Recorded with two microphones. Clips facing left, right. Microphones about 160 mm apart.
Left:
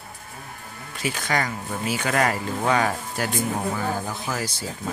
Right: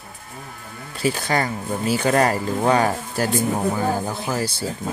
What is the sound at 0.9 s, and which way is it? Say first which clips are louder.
Speech: right 4 dB; 35° right (ahead or behind).